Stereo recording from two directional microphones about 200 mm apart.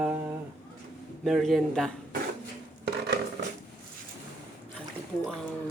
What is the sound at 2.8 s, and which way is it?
Rub, 55° right (ahead or behind).